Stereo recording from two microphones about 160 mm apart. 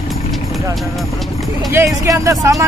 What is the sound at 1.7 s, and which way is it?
Speech, 20° right (ahead or behind).